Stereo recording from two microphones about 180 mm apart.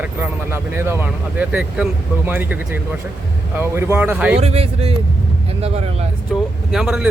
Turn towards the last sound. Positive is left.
turn(degrees=0)  # may be behind; listen again after turning